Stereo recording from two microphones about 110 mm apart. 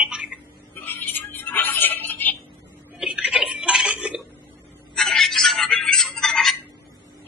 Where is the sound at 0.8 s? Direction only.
20° left (ahead or behind).